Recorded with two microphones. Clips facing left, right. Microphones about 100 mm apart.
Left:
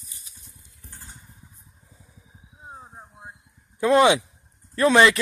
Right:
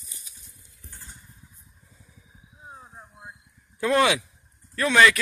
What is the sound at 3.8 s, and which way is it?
Speech, 20° left (ahead or behind).